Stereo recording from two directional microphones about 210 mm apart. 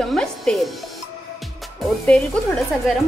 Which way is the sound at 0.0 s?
Centre (ahead or behind).